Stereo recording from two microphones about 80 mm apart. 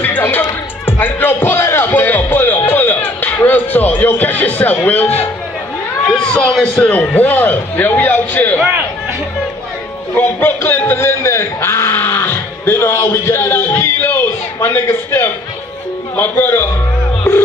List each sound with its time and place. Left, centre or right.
0.2 s speech: left
6.0 s cat: centre
6.8 s a man's voice: centre
10.1 s speech: left
13.9 s a sound: left
16.2 s a man's voice: left